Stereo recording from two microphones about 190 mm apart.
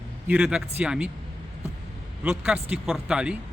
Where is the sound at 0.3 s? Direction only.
5° right (ahead or behind).